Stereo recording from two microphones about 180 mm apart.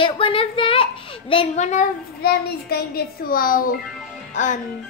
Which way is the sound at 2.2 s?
60° left (ahead or behind).